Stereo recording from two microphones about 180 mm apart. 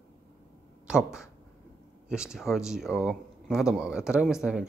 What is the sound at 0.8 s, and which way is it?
Speech, 5° right (ahead or behind).